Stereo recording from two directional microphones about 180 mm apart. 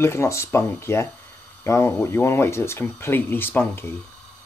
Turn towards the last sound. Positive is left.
turn(degrees=10)  # may be behind; listen again after turning